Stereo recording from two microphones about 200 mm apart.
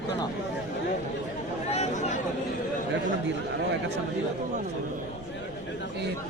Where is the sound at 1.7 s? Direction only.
30° left (ahead or behind).